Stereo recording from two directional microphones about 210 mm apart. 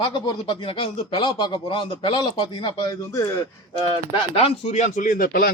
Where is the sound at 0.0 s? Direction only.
20° left (ahead or behind).